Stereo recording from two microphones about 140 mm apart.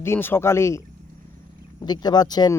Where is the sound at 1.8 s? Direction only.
30° left (ahead or behind).